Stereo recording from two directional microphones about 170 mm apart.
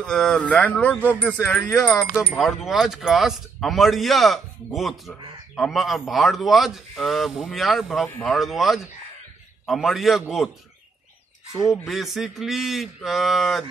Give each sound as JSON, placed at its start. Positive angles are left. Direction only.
{"t": 0.0, "sound": "speech", "side_deg": 5}
{"t": 1.8, "sound": "speech", "side_deg": 20}
{"t": 2.3, "sound": "speech", "side_deg": 0}
{"t": 11.7, "sound": "speech", "side_deg": 0}